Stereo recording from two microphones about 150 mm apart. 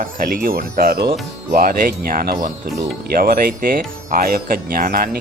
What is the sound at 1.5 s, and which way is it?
Speech, 75° right (ahead or behind).